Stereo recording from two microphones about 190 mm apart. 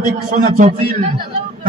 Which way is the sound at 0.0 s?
45° right (ahead or behind).